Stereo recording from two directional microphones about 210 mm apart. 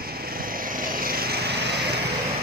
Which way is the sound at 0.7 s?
45° right (ahead or behind).